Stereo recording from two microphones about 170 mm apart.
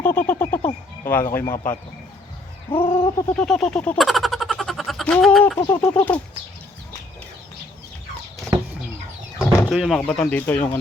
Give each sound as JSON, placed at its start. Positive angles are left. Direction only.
{"t": 0.0, "sound": "bird", "side_deg": 10}
{"t": 2.8, "sound": "bird", "side_deg": 25}
{"t": 3.3, "sound": "speech", "side_deg": 5}
{"t": 5.5, "sound": "bird", "side_deg": 20}
{"t": 5.9, "sound": "speech", "side_deg": 10}
{"t": 9.6, "sound": "speech", "side_deg": 0}